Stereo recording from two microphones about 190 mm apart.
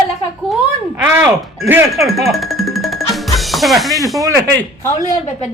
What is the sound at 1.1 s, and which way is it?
Speech, 10° right (ahead or behind).